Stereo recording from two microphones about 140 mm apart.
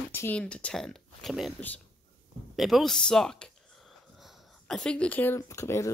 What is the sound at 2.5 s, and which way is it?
Speech, centre (ahead or behind).